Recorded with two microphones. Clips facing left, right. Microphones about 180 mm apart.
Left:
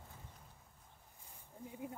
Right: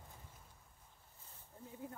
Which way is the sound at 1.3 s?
15° left (ahead or behind).